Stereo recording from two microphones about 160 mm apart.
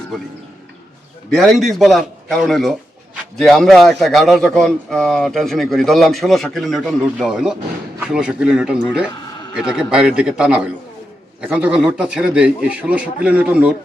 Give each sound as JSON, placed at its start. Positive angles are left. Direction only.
{"t": 1.3, "sound": "a man's voice", "side_deg": 0}